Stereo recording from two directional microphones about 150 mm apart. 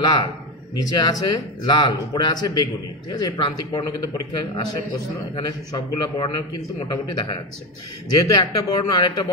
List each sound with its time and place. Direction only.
0.0 s speech: 30° left (ahead or behind)